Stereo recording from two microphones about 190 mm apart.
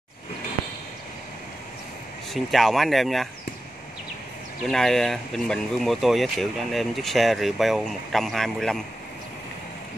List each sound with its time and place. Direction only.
2.3 s speech: centre (ahead or behind)
4.6 s speech: centre (ahead or behind)